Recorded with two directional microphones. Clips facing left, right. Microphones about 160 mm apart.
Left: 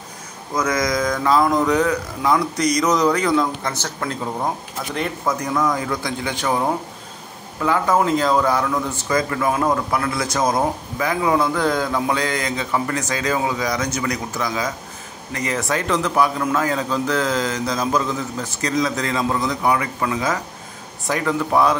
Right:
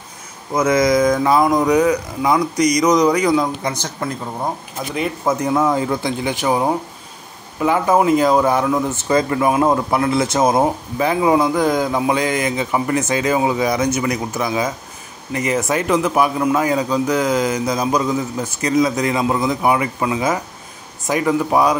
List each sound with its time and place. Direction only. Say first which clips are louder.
0.6 s a man's voice: right 6 dB; 25° right (ahead or behind)
5.2 s a man's voice: right 5 dB; 25° right (ahead or behind)